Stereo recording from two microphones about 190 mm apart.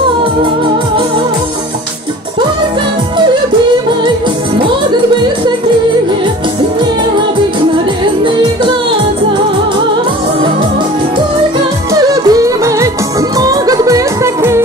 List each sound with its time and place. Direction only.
11.9 s music: 20° right (ahead or behind)